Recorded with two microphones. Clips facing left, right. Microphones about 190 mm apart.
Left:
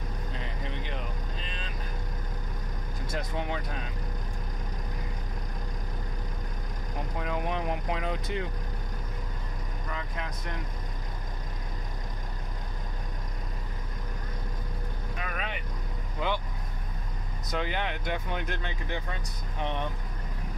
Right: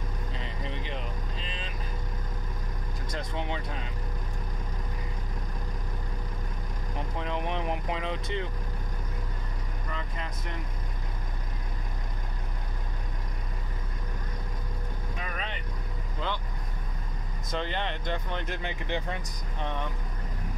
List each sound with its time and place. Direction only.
0.4 s a sound: centre (ahead or behind)
1.4 s vehicle: centre (ahead or behind)
3.3 s speech: 5° left (ahead or behind)
7.2 s speech: 5° left (ahead or behind)
15.3 s vehicle: 10° left (ahead or behind)
16.2 s speech: 10° left (ahead or behind)
17.5 s speech: 5° left (ahead or behind)
18.6 s speech: 25° right (ahead or behind)